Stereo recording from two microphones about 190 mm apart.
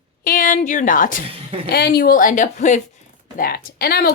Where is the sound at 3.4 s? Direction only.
55° left (ahead or behind).